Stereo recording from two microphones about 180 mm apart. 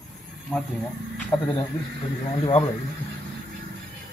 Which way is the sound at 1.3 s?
20° left (ahead or behind).